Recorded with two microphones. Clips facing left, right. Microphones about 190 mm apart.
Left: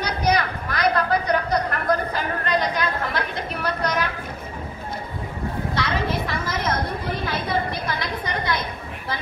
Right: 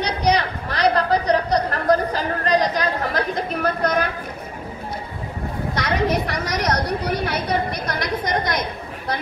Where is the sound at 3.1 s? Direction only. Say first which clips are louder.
Right 4 dB; 50° right (ahead or behind).